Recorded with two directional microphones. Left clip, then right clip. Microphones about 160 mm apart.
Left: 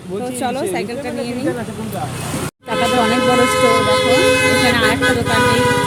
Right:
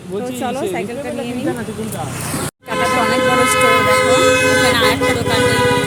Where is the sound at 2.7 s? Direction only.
25° left (ahead or behind).